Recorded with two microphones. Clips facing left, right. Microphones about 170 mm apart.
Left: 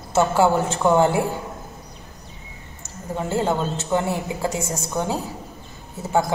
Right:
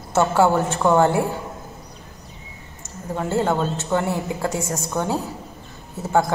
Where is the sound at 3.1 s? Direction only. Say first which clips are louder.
Right 1 dB; 15° left (ahead or behind).